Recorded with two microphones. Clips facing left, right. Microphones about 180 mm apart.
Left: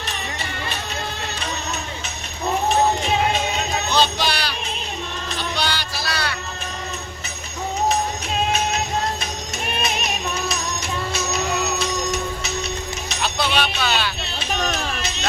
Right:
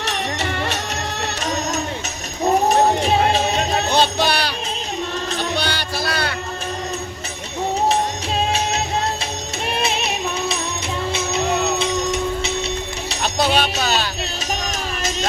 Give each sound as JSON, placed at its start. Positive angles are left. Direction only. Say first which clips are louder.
{"t": 0.0, "sound": "music", "louder": "right 6 dB", "side_deg": -75}
{"t": 3.8, "sound": "a sound", "louder": "right 1 dB", "side_deg": -55}
{"t": 5.4, "sound": "music", "louder": "even", "side_deg": -50}
{"t": 9.6, "sound": "music", "louder": "right 3 dB", "side_deg": -30}
{"t": 13.1, "sound": "music", "louder": "right 5 dB", "side_deg": -40}